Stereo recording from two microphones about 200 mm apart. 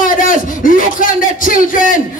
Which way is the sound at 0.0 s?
40° left (ahead or behind).